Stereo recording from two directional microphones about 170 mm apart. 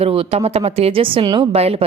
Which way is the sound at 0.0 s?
35° right (ahead or behind).